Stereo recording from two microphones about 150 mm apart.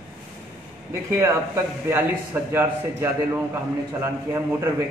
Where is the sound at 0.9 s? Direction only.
20° right (ahead or behind).